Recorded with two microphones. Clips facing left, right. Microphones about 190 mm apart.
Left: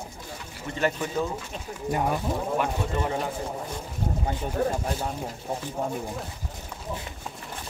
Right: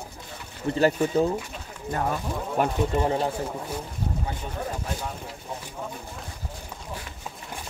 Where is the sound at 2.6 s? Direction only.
30° right (ahead or behind).